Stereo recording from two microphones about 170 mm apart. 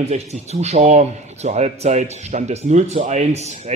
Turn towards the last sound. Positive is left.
turn(degrees=-40)  # may be behind; listen again after turning